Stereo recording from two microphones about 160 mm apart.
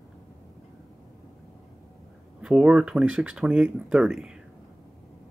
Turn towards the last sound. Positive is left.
turn(degrees=-5)  # may be behind; listen again after turning